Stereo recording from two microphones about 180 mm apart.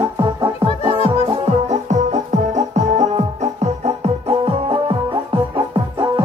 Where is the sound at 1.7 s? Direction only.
40° right (ahead or behind).